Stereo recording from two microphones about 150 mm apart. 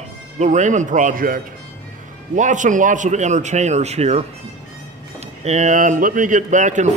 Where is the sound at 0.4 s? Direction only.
55° right (ahead or behind).